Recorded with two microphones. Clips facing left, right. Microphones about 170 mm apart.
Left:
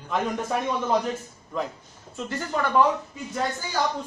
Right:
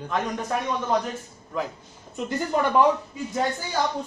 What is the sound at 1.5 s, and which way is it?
Speech, centre (ahead or behind).